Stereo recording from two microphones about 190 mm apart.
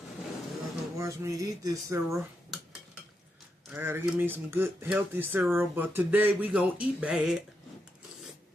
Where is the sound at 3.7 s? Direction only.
10° right (ahead or behind).